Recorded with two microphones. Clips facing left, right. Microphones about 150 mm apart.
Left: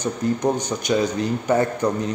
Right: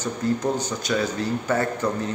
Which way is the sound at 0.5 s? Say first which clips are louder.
Left 3 dB; 20° left (ahead or behind).